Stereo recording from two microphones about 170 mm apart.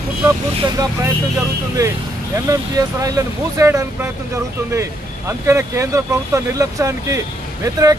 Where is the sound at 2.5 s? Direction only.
20° right (ahead or behind).